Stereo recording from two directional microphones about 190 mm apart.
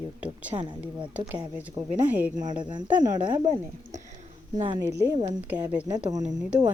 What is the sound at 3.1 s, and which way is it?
Speech, 40° right (ahead or behind).